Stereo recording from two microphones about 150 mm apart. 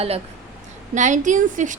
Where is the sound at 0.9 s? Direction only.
55° right (ahead or behind).